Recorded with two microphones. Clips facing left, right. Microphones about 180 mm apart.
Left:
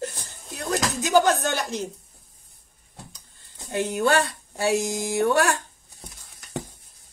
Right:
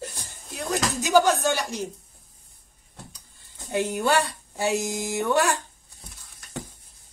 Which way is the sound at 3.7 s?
15° right (ahead or behind).